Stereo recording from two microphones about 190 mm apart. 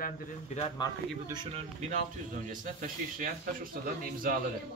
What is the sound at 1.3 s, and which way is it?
Speech, 25° right (ahead or behind).